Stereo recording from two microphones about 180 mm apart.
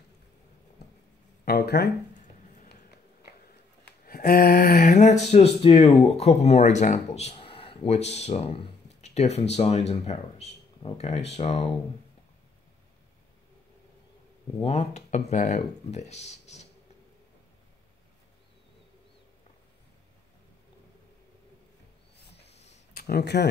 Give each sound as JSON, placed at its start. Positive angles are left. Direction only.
{"t": 1.4, "sound": "speech", "side_deg": 60}
{"t": 4.0, "sound": "speech", "side_deg": 55}
{"t": 14.6, "sound": "speech", "side_deg": 35}
{"t": 22.5, "sound": "a sound", "side_deg": 40}
{"t": 23.0, "sound": "speech", "side_deg": 65}